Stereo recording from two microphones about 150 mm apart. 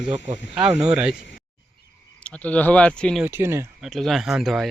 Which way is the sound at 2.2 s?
10° left (ahead or behind).